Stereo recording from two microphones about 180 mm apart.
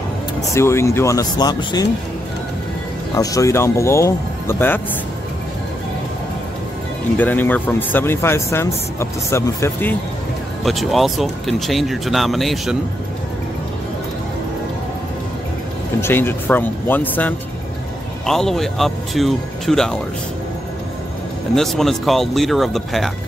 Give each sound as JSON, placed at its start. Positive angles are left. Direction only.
{"t": 0.5, "sound": "speech", "side_deg": 15}
{"t": 3.2, "sound": "speech", "side_deg": 20}
{"t": 7.2, "sound": "speech", "side_deg": 10}
{"t": 10.6, "sound": "speech", "side_deg": 0}
{"t": 16.0, "sound": "speech", "side_deg": 10}
{"t": 21.5, "sound": "speech", "side_deg": 0}